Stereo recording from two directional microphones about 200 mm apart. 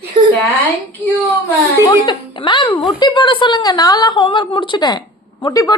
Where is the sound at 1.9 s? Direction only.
25° left (ahead or behind).